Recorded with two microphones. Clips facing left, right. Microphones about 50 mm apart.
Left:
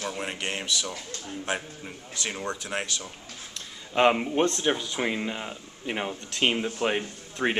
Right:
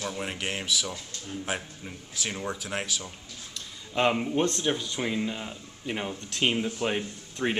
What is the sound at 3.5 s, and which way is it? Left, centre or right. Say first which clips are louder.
Speech: left 3 dB; centre.